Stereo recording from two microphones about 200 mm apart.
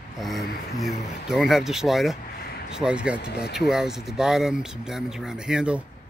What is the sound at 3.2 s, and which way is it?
Speech, 55° left (ahead or behind).